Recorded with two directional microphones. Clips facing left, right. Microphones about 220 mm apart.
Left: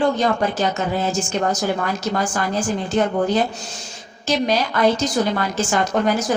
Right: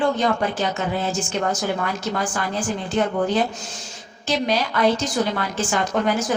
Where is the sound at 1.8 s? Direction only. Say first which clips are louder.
Left 3 dB; 40° left (ahead or behind).